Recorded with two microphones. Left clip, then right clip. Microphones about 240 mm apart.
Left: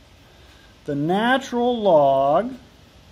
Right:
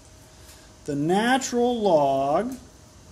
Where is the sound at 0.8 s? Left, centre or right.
Left.